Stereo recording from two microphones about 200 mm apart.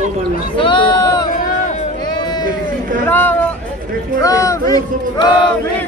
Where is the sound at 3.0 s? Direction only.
10° left (ahead or behind).